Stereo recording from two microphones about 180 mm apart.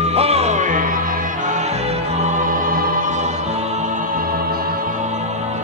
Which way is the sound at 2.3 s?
45° right (ahead or behind).